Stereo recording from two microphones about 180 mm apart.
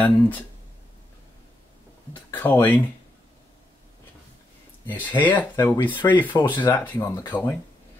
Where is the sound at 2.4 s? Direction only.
10° left (ahead or behind).